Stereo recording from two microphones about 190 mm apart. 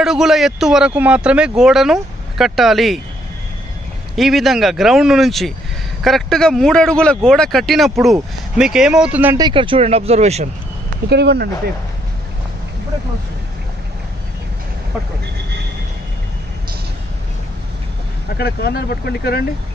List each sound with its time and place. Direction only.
0.0 s speech: centre (ahead or behind)
4.1 s speech: centre (ahead or behind)
9.4 s speech: 25° right (ahead or behind)
11.1 s speech: 60° right (ahead or behind)
18.4 s speech: 55° left (ahead or behind)